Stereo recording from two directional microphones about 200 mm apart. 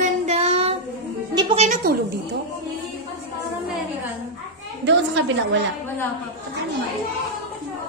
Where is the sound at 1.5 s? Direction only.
35° right (ahead or behind).